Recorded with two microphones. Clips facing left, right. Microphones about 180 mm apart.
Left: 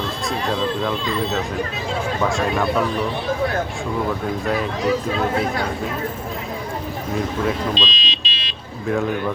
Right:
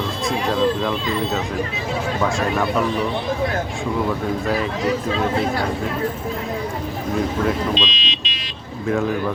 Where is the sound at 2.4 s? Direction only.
Centre (ahead or behind).